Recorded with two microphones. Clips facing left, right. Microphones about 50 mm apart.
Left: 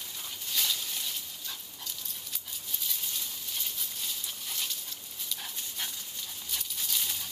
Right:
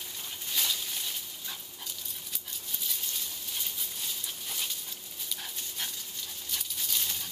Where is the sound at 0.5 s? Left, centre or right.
Centre.